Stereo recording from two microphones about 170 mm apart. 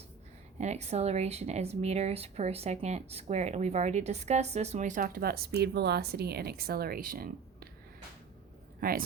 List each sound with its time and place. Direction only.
0.6 s speech: 40° right (ahead or behind); by 7.7 s 60° right (ahead or behind)
8.8 s speech: 60° right (ahead or behind)